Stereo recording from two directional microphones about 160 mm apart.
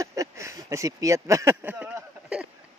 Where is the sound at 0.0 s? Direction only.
20° right (ahead or behind).